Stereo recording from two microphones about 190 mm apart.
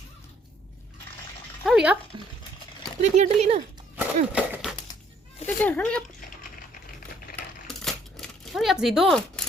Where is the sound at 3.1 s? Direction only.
35° right (ahead or behind).